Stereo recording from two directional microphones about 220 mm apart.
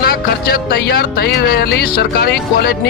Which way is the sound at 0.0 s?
40° left (ahead or behind).